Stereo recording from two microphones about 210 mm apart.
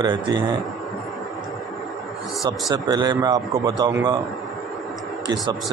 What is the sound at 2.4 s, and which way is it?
A man's voice, 20° right (ahead or behind).